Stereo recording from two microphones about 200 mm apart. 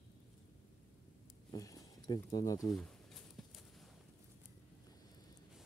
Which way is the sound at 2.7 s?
Centre (ahead or behind).